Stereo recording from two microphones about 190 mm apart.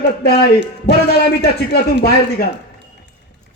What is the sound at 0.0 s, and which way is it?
Speech, 55° left (ahead or behind).